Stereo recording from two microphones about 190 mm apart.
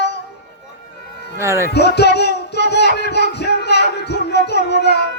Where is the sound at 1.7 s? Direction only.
60° left (ahead or behind).